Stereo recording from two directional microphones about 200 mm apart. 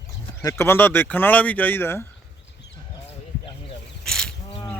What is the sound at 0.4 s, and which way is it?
Speech, 10° left (ahead or behind).